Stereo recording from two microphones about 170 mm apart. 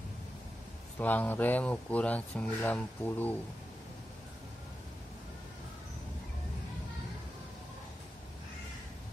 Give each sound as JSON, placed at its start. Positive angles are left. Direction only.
{"t": 0.9, "sound": "speech", "side_deg": 10}